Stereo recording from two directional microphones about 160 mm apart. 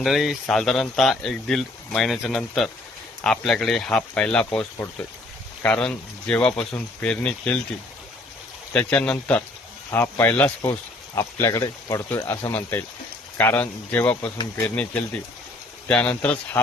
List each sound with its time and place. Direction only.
0.0 s speech: centre (ahead or behind)
5.6 s speech: 5° left (ahead or behind)
8.7 s speech: 10° left (ahead or behind)